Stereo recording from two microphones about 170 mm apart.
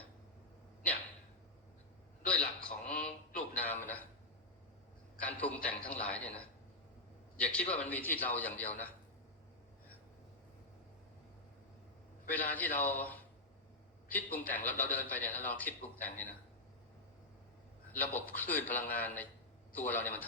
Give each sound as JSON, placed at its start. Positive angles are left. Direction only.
{"t": 2.2, "sound": "a sound", "side_deg": 5}
{"t": 5.2, "sound": "a man's voice", "side_deg": 10}
{"t": 7.5, "sound": "a man's voice", "side_deg": 10}
{"t": 12.3, "sound": "a man's voice", "side_deg": 10}
{"t": 18.0, "sound": "a man's voice", "side_deg": 10}